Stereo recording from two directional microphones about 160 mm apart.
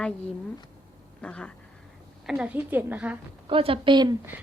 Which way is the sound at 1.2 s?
5° left (ahead or behind).